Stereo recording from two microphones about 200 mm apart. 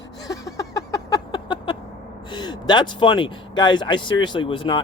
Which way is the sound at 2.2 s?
20° left (ahead or behind).